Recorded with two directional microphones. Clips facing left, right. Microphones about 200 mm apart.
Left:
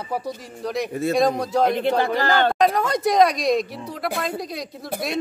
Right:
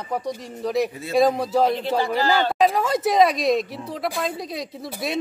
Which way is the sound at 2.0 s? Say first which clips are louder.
Left 1 dB; 60° left (ahead or behind).